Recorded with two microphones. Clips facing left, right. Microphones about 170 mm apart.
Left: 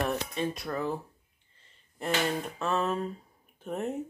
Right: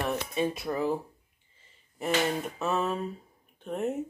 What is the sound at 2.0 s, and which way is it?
Speech, 5° right (ahead or behind).